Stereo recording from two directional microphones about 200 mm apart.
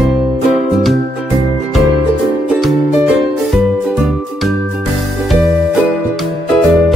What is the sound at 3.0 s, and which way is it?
Music, centre (ahead or behind).